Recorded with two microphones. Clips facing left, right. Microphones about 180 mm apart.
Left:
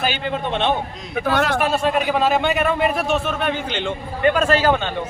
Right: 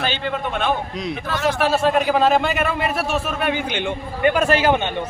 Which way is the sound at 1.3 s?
65° left (ahead or behind).